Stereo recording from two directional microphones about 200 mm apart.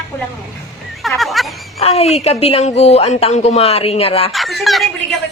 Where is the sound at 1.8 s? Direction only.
30° left (ahead or behind).